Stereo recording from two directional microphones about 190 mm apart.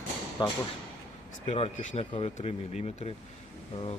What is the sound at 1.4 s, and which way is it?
Speech, 35° left (ahead or behind).